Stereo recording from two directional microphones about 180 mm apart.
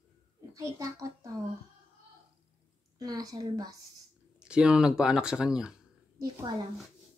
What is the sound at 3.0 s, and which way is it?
Speech, 20° right (ahead or behind).